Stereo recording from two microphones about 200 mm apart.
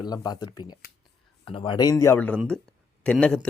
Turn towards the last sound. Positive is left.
turn(degrees=5)  # may be behind; listen again after turning